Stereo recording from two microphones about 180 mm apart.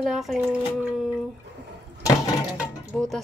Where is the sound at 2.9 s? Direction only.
5° left (ahead or behind).